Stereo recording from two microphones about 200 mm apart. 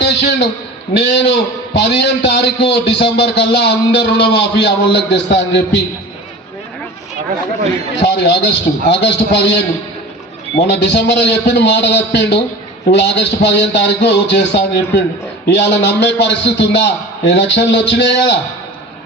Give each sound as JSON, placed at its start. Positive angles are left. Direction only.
{"t": 0.0, "sound": "a sound", "side_deg": 60}
{"t": 0.9, "sound": "a man's voice", "side_deg": 60}
{"t": 7.9, "sound": "a man's voice", "side_deg": 60}